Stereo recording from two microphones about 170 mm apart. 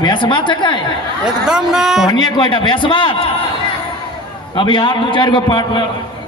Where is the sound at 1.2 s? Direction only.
5° right (ahead or behind).